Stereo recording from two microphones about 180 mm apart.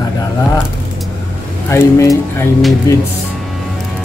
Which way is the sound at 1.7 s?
15° left (ahead or behind).